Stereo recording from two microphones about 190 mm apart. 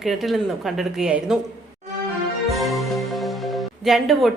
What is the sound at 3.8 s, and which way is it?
Speech, centre (ahead or behind).